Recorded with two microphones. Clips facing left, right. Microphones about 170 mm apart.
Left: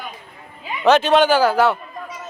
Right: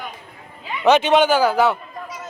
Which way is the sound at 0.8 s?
15° right (ahead or behind).